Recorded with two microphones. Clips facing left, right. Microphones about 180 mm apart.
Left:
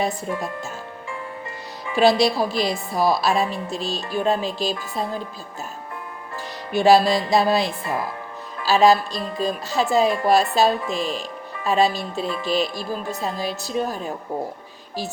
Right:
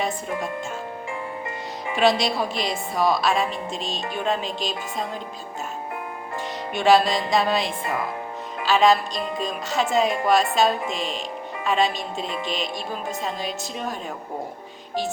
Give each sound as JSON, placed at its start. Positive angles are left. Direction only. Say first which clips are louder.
{"t": 2.0, "sound": "a woman's voice", "louder": "left 4 dB", "side_deg": 35}
{"t": 6.7, "sound": "a woman's voice", "louder": "left 3 dB", "side_deg": 35}